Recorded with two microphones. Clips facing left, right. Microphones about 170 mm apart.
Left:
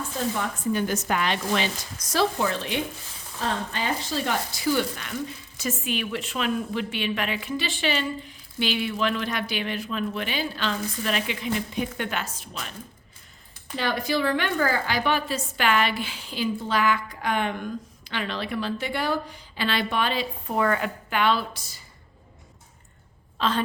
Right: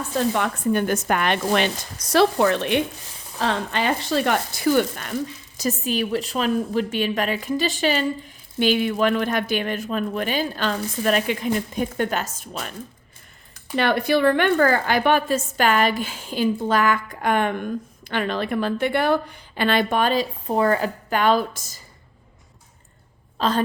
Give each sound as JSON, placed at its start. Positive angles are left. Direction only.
{"t": 0.3, "sound": "speech", "side_deg": -70}
{"t": 3.3, "sound": "a woman's voice", "side_deg": -75}
{"t": 13.7, "sound": "speech", "side_deg": -60}
{"t": 23.4, "sound": "speech", "side_deg": -40}